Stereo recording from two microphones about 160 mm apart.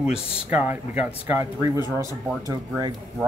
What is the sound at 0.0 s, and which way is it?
Speech, 5° right (ahead or behind).